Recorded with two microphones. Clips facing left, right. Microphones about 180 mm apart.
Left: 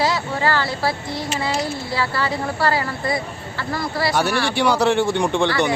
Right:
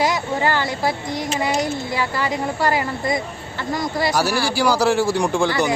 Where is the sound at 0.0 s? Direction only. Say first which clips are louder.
Right 1 dB; 15° right (ahead or behind).